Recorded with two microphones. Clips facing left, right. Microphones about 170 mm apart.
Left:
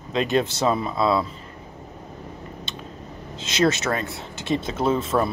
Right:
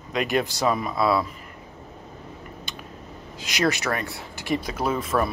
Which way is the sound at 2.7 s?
25° left (ahead or behind).